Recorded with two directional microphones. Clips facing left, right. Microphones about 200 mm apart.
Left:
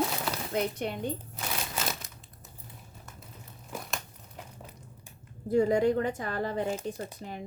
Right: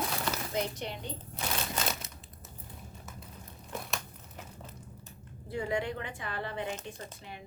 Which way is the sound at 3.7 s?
10° left (ahead or behind).